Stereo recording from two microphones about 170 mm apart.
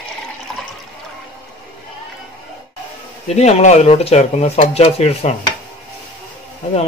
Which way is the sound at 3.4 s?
40° left (ahead or behind).